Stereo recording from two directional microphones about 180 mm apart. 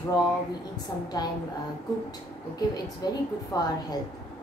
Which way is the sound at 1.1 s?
20° left (ahead or behind).